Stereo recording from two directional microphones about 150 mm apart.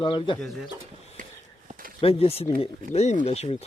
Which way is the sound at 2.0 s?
40° left (ahead or behind).